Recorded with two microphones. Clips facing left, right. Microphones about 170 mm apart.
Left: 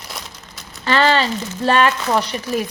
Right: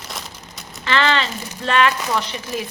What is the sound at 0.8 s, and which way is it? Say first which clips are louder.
Speech: left 3 dB; 40° left (ahead or behind).